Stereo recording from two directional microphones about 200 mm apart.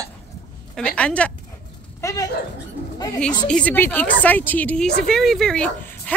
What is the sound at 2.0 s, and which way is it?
Speech, 15° left (ahead or behind).